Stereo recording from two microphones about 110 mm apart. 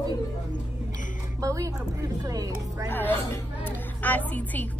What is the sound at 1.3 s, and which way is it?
A woman's voice, 30° right (ahead or behind).